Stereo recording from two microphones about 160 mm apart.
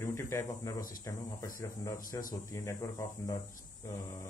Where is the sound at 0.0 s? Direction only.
15° left (ahead or behind).